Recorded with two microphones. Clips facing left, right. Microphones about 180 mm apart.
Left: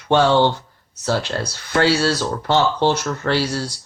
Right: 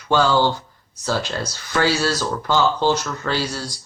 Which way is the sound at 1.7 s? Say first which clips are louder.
Left 3 dB; 25° left (ahead or behind).